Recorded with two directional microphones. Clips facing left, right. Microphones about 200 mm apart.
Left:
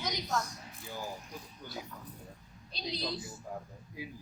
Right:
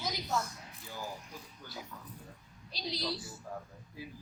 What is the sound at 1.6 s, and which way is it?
Speech, 20° left (ahead or behind).